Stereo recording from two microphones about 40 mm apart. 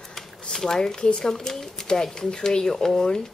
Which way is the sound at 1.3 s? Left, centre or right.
Centre.